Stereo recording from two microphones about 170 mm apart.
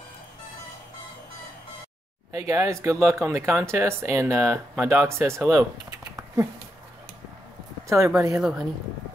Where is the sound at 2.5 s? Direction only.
15° right (ahead or behind).